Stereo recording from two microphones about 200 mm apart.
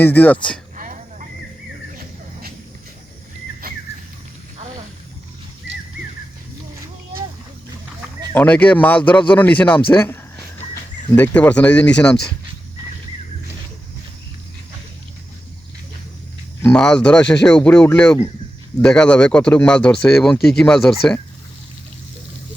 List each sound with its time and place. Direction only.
0.0 s speech: 10° left (ahead or behind)
0.8 s a sound: 40° right (ahead or behind)
8.3 s speech: 5° left (ahead or behind)
16.6 s speech: 5° left (ahead or behind)